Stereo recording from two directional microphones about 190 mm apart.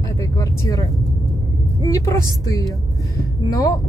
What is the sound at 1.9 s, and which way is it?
Speech, 15° left (ahead or behind).